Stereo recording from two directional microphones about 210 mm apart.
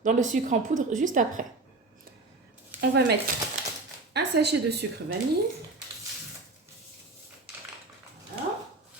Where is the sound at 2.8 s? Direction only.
50° right (ahead or behind).